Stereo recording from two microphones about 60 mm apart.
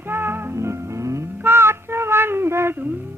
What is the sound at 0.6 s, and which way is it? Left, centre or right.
Music, right.